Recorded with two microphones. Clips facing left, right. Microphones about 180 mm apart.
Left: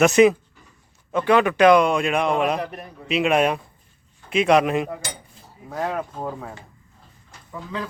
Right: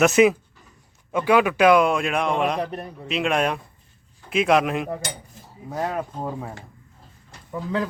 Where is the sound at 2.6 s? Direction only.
30° right (ahead or behind).